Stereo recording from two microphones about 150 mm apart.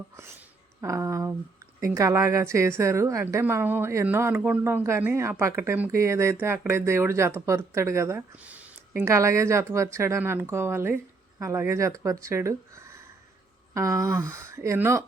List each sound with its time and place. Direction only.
0.8 s a woman's voice: 20° right (ahead or behind)